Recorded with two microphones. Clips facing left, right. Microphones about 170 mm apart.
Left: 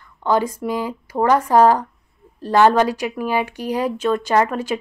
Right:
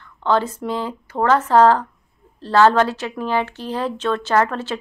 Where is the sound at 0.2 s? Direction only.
10° left (ahead or behind).